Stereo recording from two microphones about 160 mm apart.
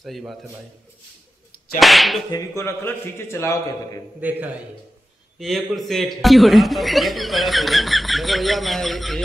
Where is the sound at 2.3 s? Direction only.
15° left (ahead or behind).